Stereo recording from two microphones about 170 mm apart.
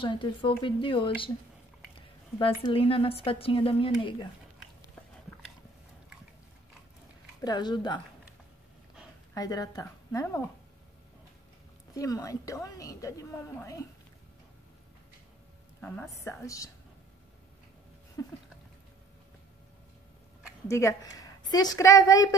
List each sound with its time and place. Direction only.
0.0 s a woman's voice: 30° left (ahead or behind)
7.4 s a woman's voice: 25° left (ahead or behind)
9.3 s a woman's voice: 20° left (ahead or behind)
11.9 s a woman's voice: 20° left (ahead or behind)
15.8 s a woman's voice: 15° left (ahead or behind)
18.2 s a sound: 20° left (ahead or behind)
20.6 s a woman's voice: 20° left (ahead or behind)